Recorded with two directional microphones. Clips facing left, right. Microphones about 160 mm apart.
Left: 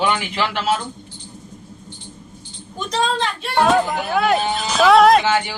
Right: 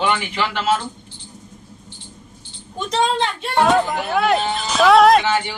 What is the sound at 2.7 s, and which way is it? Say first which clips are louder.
Speech: right 2 dB; 25° right (ahead or behind).